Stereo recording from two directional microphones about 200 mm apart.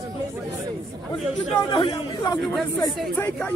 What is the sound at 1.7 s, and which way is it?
Speech, 25° left (ahead or behind).